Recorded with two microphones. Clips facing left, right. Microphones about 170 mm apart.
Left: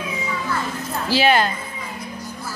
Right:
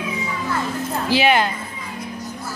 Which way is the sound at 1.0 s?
20° right (ahead or behind).